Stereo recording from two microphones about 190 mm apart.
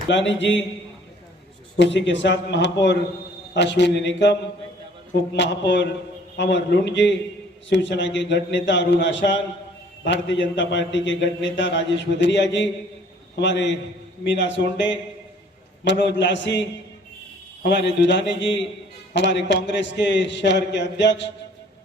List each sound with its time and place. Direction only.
0.3 s a man's voice: 70° left (ahead or behind)
1.7 s a man's voice: 70° left (ahead or behind)